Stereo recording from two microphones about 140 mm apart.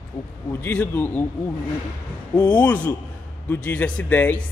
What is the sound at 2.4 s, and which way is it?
Speech, 10° left (ahead or behind).